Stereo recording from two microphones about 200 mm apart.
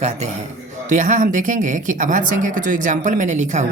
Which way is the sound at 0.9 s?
40° right (ahead or behind).